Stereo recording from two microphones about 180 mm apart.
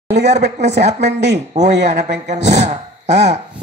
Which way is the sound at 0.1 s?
65° right (ahead or behind).